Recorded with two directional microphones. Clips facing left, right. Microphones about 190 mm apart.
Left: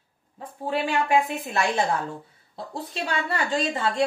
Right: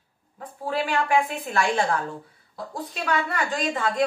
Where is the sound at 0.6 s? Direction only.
20° left (ahead or behind).